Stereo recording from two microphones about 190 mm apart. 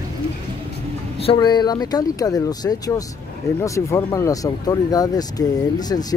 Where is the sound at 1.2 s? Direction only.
25° left (ahead or behind).